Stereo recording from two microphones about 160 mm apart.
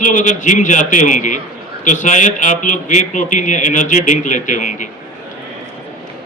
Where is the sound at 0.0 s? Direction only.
55° left (ahead or behind).